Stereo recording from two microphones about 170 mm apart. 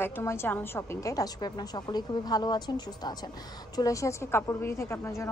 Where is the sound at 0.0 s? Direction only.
15° left (ahead or behind).